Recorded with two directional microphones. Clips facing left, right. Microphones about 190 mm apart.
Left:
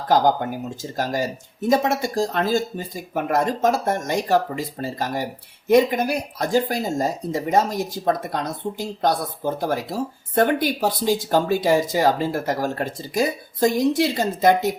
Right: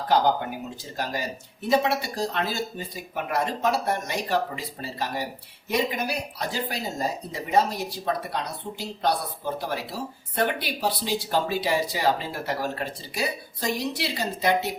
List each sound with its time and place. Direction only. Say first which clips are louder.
0.1 s speech: left 4 dB; 45° left (ahead or behind)